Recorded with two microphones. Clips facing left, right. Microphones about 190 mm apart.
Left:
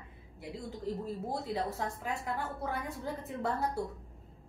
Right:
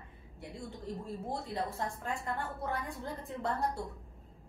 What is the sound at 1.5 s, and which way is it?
A woman's voice, 5° left (ahead or behind).